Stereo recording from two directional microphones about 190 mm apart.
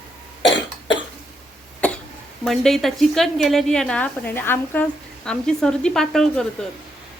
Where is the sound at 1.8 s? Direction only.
5° left (ahead or behind).